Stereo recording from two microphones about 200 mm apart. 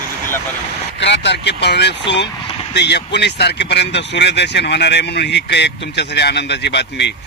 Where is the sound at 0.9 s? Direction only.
60° left (ahead or behind).